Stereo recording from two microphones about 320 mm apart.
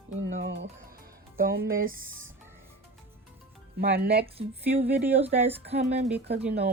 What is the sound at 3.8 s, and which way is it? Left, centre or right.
Speech, right.